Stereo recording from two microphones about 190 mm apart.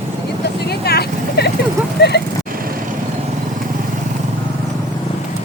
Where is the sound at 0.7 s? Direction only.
60° left (ahead or behind).